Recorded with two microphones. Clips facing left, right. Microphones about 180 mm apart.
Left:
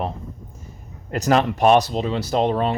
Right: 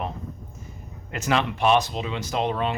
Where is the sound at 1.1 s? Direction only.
40° left (ahead or behind).